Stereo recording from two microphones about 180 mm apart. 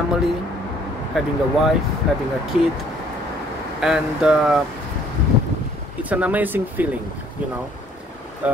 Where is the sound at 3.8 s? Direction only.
5° right (ahead or behind).